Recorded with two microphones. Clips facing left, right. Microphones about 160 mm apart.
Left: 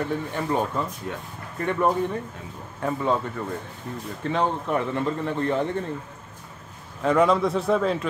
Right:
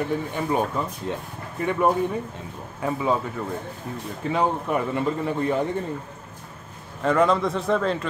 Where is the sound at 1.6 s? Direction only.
10° right (ahead or behind).